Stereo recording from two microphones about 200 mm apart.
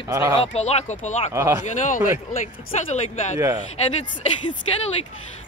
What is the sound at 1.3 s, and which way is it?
Speech, 15° right (ahead or behind).